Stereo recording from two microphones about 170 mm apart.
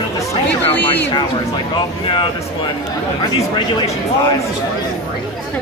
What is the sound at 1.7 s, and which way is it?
Speech, 25° left (ahead or behind).